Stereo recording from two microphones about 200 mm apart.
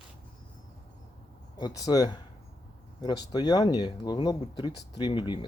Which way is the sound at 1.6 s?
20° left (ahead or behind).